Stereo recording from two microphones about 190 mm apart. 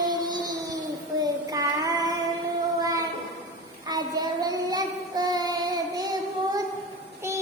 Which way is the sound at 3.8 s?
20° right (ahead or behind).